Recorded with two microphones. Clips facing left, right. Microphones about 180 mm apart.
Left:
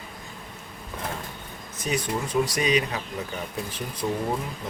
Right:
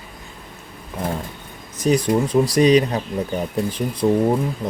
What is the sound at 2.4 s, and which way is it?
Speech, 35° right (ahead or behind).